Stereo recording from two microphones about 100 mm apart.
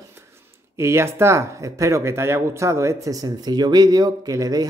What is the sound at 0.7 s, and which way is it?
Speech, 25° right (ahead or behind).